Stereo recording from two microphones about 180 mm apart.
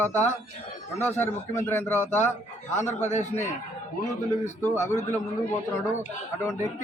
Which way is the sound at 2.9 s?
40° left (ahead or behind).